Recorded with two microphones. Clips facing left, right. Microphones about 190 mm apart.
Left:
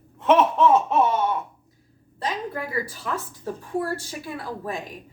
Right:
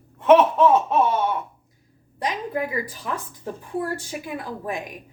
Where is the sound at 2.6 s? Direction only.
15° right (ahead or behind).